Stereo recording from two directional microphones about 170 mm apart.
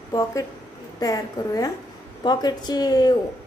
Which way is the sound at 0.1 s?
20° left (ahead or behind).